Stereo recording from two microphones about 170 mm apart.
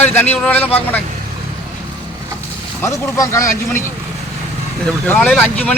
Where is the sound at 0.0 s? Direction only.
10° left (ahead or behind).